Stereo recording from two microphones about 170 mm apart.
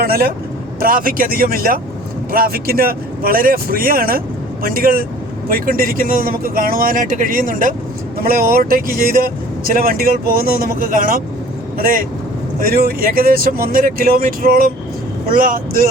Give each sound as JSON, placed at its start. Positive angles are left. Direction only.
{"t": 0.0, "sound": "speech", "side_deg": -60}